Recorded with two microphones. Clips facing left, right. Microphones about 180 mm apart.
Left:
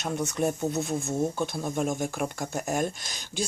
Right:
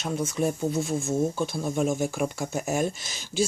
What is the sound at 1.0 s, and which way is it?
Speech, 20° left (ahead or behind).